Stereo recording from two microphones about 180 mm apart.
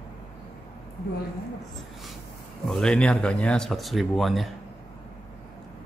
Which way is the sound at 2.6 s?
5° left (ahead or behind).